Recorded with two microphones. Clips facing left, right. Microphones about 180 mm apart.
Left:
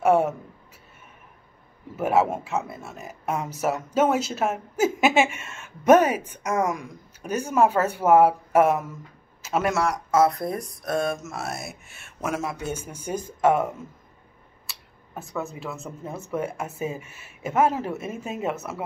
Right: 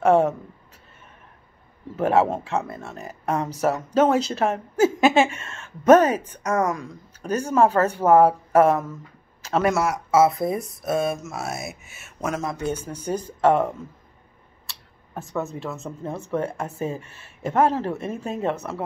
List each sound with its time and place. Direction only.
0.0 s speech: 5° left (ahead or behind)
2.0 s speech: 10° left (ahead or behind)
16.0 s speech: 5° left (ahead or behind)